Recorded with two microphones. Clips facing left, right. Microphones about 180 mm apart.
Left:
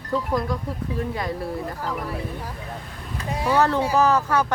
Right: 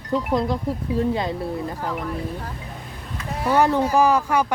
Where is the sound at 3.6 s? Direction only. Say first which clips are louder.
Right 2 dB; 15° right (ahead or behind).